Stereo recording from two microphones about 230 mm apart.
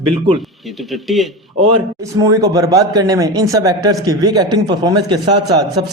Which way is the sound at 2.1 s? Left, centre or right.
Centre.